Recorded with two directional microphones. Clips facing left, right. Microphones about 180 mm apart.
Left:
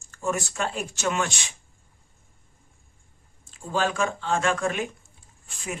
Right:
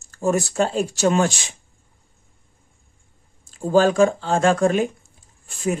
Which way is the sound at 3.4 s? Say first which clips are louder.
Right 10 dB; 40° right (ahead or behind).